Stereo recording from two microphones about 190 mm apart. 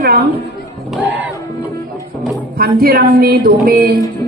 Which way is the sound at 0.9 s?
10° right (ahead or behind).